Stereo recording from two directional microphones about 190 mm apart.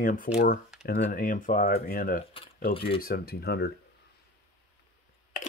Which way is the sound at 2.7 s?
30° left (ahead or behind).